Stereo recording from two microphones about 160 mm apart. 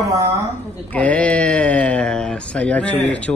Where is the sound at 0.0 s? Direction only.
20° right (ahead or behind).